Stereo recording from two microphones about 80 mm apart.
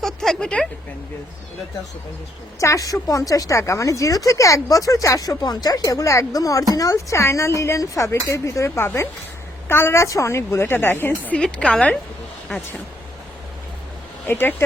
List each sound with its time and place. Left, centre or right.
0.0 s a sound: centre
2.6 s speech: left
11.3 s a woman's voice: centre
14.3 s speech: left